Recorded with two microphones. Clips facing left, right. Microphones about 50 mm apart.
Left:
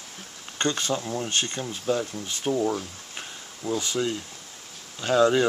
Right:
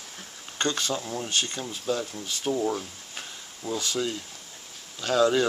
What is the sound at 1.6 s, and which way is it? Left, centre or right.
Speech, left.